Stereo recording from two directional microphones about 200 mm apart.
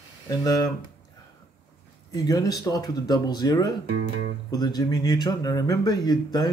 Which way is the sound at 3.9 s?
65° right (ahead or behind).